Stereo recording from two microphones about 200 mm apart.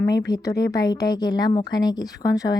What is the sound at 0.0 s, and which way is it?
A woman's voice, 15° left (ahead or behind).